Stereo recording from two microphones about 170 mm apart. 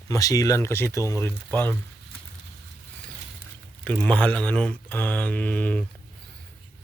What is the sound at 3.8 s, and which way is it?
Speech, 5° left (ahead or behind).